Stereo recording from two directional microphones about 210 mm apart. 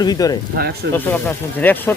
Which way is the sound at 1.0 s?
10° left (ahead or behind).